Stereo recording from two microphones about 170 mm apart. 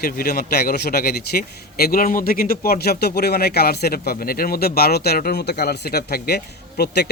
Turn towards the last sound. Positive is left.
turn(degrees=70)  # may be behind; listen again after turning